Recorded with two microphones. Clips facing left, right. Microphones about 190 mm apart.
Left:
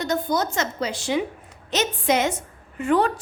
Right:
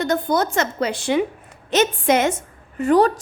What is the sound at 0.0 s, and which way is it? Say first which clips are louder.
A woman's voice: right 4 dB; 55° right (ahead or behind).